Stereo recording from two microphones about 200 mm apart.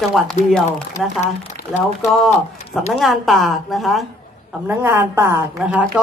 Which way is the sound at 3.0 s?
Centre (ahead or behind).